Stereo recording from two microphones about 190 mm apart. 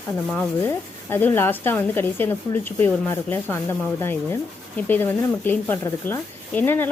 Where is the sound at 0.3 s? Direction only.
10° left (ahead or behind).